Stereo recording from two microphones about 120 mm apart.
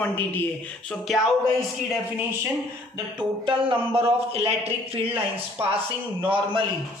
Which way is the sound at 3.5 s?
50° right (ahead or behind).